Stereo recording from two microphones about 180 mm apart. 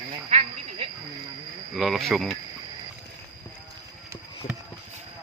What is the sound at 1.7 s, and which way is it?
Cricket, centre (ahead or behind).